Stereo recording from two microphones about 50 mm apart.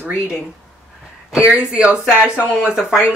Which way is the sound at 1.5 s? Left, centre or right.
Centre.